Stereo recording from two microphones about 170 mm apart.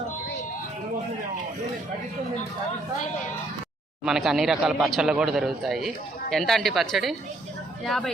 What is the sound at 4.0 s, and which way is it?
Speech, 5° right (ahead or behind).